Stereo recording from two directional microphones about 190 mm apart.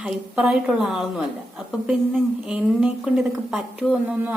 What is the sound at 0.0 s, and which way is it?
A woman's voice, 5° right (ahead or behind).